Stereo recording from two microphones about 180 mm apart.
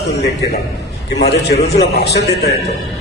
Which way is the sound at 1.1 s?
65° left (ahead or behind).